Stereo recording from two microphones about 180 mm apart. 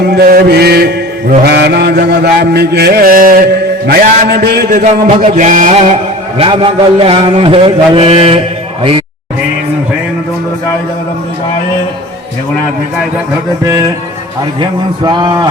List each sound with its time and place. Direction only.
0.2 s mantra: 55° right (ahead or behind)
4.7 s music: 45° right (ahead or behind)
14.6 s a man's voice: 25° right (ahead or behind)